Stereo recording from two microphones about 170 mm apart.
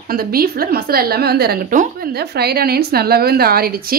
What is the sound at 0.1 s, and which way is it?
A woman's voice, 60° right (ahead or behind).